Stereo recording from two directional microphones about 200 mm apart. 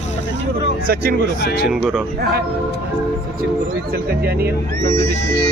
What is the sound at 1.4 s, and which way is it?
Speech, 55° left (ahead or behind).